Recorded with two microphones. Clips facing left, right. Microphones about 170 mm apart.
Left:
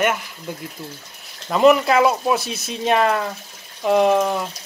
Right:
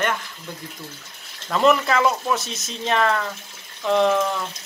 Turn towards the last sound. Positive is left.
turn(degrees=15)  # may be behind; listen again after turning